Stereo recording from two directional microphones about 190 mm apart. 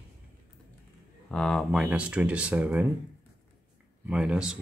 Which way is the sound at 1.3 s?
5° left (ahead or behind).